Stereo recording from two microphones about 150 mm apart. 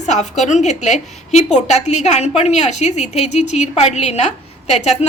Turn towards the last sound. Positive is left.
turn(degrees=50)  # may be behind; listen again after turning